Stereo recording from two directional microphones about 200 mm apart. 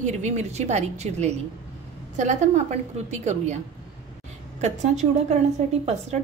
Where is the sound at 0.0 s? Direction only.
35° right (ahead or behind).